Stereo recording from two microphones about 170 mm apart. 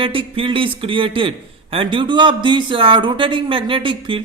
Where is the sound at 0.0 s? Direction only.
30° right (ahead or behind).